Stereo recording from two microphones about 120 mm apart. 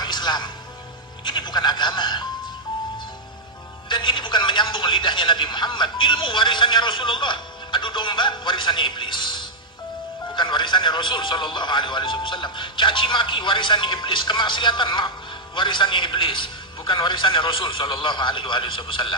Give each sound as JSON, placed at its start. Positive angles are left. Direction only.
{"t": 0.0, "sound": "music", "side_deg": 40}
{"t": 1.2, "sound": "speech", "side_deg": 40}
{"t": 3.9, "sound": "a man's voice", "side_deg": 45}